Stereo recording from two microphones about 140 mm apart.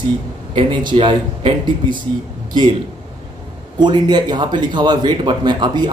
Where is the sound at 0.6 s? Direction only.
35° right (ahead or behind).